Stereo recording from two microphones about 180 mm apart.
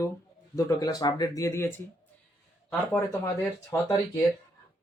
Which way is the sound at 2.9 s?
15° left (ahead or behind).